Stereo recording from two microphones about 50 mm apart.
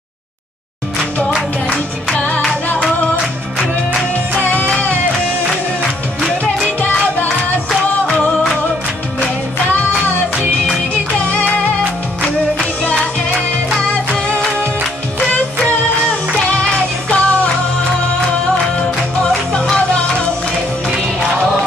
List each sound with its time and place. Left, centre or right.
1.7 s music: left
4.5 s music: left
11.3 s music: left
13.7 s music: centre
15.1 s music: left
19.2 s music: centre